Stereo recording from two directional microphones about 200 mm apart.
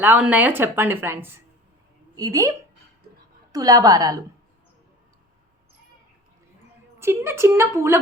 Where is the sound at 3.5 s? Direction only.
20° right (ahead or behind).